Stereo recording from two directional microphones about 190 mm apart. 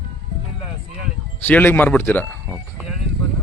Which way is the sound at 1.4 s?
10° left (ahead or behind).